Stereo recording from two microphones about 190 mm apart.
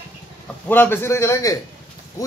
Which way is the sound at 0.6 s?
10° left (ahead or behind).